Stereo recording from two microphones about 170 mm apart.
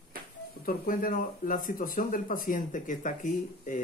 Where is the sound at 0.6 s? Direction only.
60° left (ahead or behind).